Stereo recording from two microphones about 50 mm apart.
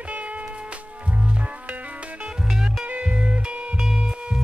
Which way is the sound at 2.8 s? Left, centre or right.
Right.